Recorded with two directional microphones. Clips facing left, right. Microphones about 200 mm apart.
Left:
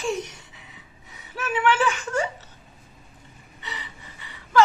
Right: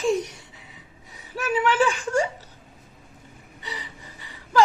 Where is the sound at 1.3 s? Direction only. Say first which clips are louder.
Even; 40° right (ahead or behind).